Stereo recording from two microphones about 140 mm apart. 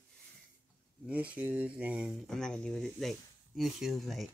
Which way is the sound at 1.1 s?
10° right (ahead or behind).